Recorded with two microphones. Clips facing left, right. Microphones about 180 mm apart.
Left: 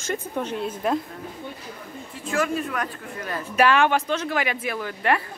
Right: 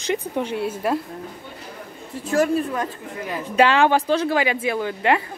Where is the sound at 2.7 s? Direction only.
20° right (ahead or behind).